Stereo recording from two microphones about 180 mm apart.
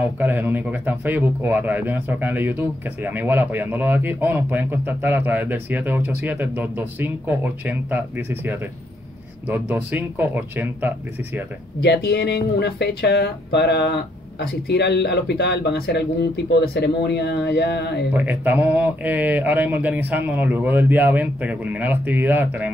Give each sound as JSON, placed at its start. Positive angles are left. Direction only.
{"t": 0.2, "sound": "speech", "side_deg": -10}
{"t": 11.8, "sound": "speech", "side_deg": 65}
{"t": 18.1, "sound": "speech", "side_deg": -10}